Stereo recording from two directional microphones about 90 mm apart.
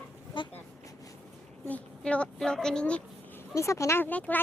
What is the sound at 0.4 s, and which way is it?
Vehicle, 60° left (ahead or behind).